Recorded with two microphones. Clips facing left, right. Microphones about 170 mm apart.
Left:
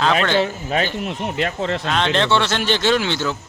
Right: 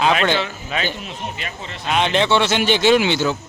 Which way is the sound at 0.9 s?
65° left (ahead or behind).